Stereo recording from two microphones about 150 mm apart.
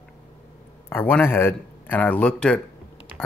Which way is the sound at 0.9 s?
10° left (ahead or behind).